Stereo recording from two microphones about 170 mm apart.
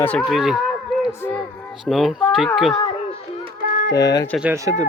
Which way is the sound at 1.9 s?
Centre (ahead or behind).